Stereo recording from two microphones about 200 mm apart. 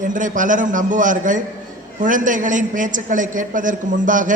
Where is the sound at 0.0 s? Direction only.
40° right (ahead or behind).